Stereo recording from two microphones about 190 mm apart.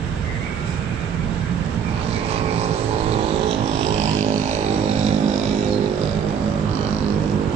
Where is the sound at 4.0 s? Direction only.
35° right (ahead or behind).